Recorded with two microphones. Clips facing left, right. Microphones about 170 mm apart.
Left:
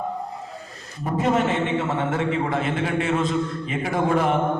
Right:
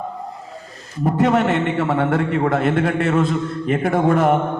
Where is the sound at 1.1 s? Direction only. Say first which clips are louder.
Right 4 dB; 70° right (ahead or behind).